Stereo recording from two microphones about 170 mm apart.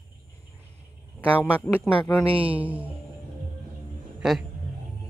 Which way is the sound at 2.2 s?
35° right (ahead or behind).